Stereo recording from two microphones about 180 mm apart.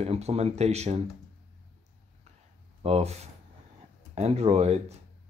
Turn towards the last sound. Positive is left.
turn(degrees=-35)  # may be behind; listen again after turning